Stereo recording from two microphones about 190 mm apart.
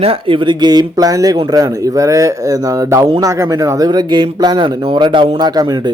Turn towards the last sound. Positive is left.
turn(degrees=-20)  # may be behind; listen again after turning